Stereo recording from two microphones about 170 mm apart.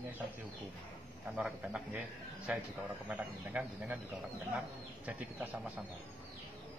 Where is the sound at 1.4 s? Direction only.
5° right (ahead or behind).